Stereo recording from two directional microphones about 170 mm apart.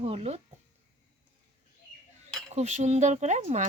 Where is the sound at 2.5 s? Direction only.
40° right (ahead or behind).